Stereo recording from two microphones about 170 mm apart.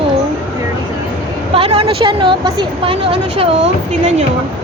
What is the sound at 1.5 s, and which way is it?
Speech, 35° right (ahead or behind).